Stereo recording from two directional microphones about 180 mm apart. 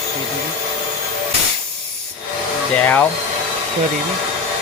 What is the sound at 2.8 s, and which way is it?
Hair dryer, 10° left (ahead or behind).